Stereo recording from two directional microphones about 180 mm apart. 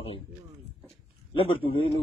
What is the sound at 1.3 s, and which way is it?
Speech, 30° left (ahead or behind).